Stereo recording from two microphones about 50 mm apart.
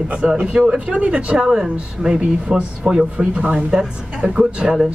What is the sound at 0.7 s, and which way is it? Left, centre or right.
A man's voice, right.